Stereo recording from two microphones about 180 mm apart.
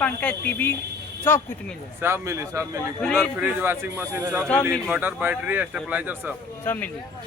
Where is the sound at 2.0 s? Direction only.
15° right (ahead or behind).